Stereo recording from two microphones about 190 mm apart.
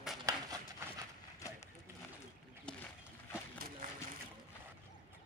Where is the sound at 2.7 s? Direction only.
5° left (ahead or behind).